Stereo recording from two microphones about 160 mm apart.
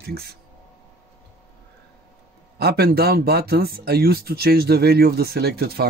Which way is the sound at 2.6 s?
75° right (ahead or behind).